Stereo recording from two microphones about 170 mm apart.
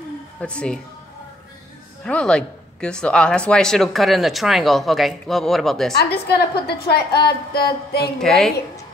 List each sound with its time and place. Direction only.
0.4 s speech: 5° left (ahead or behind)
2.0 s speech: 5° left (ahead or behind)
5.9 s a woman's voice: 70° left (ahead or behind)
8.2 s speech: centre (ahead or behind)